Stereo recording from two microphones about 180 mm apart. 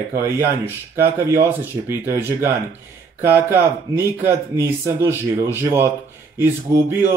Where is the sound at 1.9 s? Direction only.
15° right (ahead or behind).